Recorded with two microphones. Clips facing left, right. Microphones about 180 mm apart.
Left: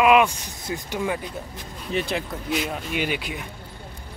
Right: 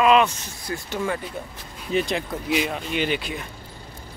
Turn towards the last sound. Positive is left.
turn(degrees=10)  # may be behind; listen again after turning